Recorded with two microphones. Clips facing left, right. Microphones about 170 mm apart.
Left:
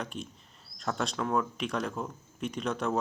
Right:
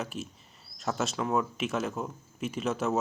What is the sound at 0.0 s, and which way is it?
Speech, 5° right (ahead or behind).